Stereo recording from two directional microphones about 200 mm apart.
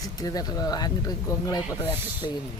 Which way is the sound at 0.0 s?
20° left (ahead or behind).